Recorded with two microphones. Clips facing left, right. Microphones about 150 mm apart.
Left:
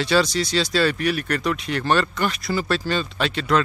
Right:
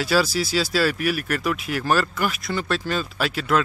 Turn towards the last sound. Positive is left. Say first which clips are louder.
# left 1 dB
turn(degrees=-5)  # may be behind; listen again after turning